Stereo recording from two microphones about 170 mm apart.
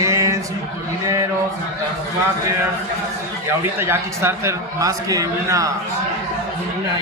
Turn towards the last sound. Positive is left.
turn(degrees=-20)  # may be behind; listen again after turning